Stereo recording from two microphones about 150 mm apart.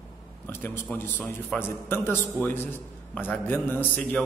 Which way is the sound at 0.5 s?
15° left (ahead or behind).